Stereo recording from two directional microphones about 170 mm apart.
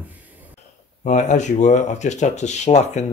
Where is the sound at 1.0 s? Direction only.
45° left (ahead or behind).